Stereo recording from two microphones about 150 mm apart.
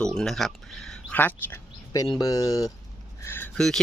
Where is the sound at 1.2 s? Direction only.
15° left (ahead or behind).